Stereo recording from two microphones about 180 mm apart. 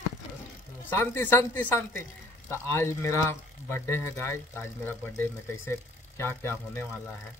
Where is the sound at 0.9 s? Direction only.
15° left (ahead or behind).